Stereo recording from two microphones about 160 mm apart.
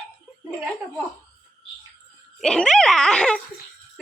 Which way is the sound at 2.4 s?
5° left (ahead or behind).